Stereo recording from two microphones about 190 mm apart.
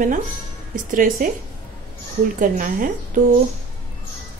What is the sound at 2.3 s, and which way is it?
Speech, 45° right (ahead or behind).